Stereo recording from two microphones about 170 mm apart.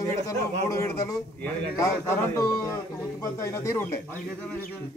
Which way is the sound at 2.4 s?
20° left (ahead or behind).